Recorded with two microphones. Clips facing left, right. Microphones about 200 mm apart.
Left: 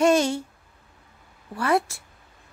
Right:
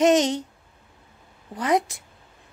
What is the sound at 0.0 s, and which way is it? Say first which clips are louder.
Speech: right 1 dB; 20° right (ahead or behind).